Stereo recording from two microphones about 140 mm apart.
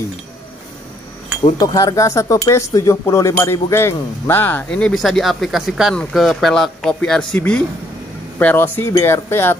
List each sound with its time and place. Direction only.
1.6 s speech: 25° left (ahead or behind)